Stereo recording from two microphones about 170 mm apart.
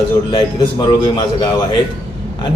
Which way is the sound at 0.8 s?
25° left (ahead or behind).